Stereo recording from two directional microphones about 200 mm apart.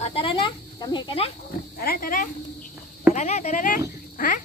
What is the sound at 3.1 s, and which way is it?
Speech, 35° left (ahead or behind).